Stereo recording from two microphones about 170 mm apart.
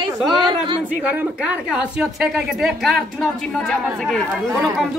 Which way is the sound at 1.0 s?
10° right (ahead or behind).